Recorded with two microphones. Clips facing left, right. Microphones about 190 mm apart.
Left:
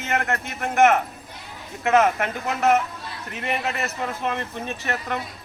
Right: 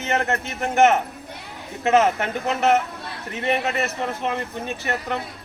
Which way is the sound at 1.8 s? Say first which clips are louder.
Right 1 dB; 25° right (ahead or behind).